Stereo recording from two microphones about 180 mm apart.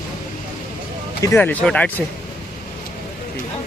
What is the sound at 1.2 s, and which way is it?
Speech, 10° left (ahead or behind).